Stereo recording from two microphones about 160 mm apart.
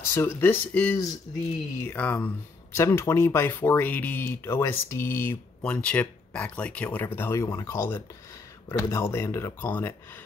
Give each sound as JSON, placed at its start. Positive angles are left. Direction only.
{"t": 0.1, "sound": "speech", "side_deg": 15}
{"t": 1.3, "sound": "speech", "side_deg": 30}
{"t": 1.8, "sound": "speech", "side_deg": 10}